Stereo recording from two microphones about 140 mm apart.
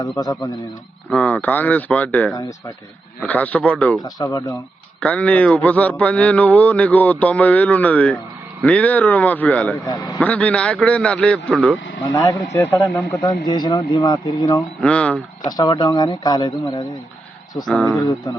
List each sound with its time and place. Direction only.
0.0 s speech: 25° left (ahead or behind)
1.1 s mantra: 10° left (ahead or behind)
2.3 s speech: 25° left (ahead or behind)
3.2 s mantra: 10° left (ahead or behind)
4.0 s speech: 25° left (ahead or behind)
4.9 s mantra: 10° left (ahead or behind)
9.9 s a man's voice: 30° left (ahead or behind)
10.2 s mantra: 10° left (ahead or behind)
12.0 s speech: 25° left (ahead or behind)
12.5 s mantra: 20° left (ahead or behind)
13.2 s speech: 30° left (ahead or behind)
14.8 s mantra: 10° left (ahead or behind)
15.4 s speech: 30° left (ahead or behind)
17.7 s speech: 5° left (ahead or behind)